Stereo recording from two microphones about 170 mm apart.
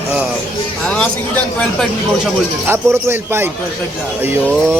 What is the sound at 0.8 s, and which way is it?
Speech, 10° left (ahead or behind).